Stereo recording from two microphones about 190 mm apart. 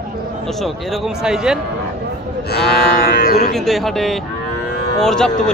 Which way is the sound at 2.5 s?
60° left (ahead or behind).